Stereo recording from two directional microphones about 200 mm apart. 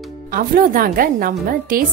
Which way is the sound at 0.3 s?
45° right (ahead or behind).